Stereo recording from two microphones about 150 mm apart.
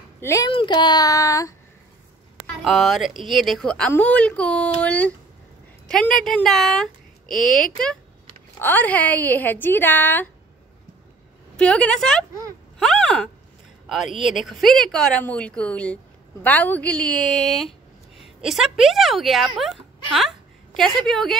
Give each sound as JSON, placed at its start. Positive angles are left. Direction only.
{"t": 0.2, "sound": "speech", "side_deg": 20}
{"t": 0.5, "sound": "speech", "side_deg": 35}
{"t": 2.4, "sound": "a woman's voice", "side_deg": 0}
{"t": 11.5, "sound": "speech", "side_deg": 5}
{"t": 12.7, "sound": "a sound", "side_deg": 5}
{"t": 13.8, "sound": "a woman's voice", "side_deg": 0}
{"t": 17.6, "sound": "a sound", "side_deg": 0}
{"t": 18.4, "sound": "a woman's voice", "side_deg": -5}